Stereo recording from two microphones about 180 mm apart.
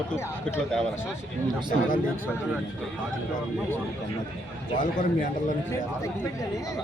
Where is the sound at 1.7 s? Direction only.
50° left (ahead or behind).